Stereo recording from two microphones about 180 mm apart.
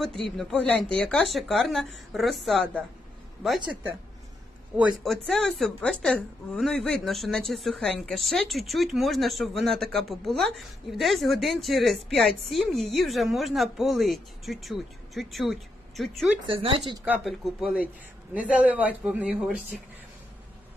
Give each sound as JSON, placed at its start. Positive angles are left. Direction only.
{"t": 0.0, "sound": "a woman's voice", "side_deg": 0}
{"t": 4.7, "sound": "a woman's voice", "side_deg": -5}
{"t": 16.4, "sound": "speech", "side_deg": -30}
{"t": 17.0, "sound": "a woman's voice", "side_deg": -5}